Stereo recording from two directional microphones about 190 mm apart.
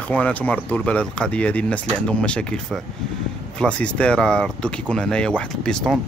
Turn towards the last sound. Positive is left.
turn(degrees=5)  # may be behind; listen again after turning